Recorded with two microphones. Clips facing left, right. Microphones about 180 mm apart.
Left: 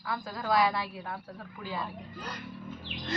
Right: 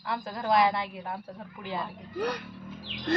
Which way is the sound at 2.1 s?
65° right (ahead or behind).